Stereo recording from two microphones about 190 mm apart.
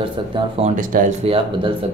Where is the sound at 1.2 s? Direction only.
30° right (ahead or behind).